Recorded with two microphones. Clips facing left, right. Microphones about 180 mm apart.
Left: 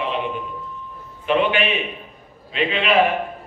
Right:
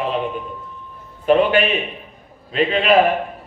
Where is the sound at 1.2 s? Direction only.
40° right (ahead or behind).